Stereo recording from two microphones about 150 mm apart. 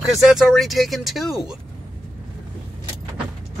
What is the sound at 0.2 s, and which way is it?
Speech, centre (ahead or behind).